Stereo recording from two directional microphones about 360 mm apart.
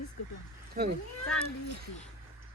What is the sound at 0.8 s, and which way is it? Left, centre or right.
Speech, right.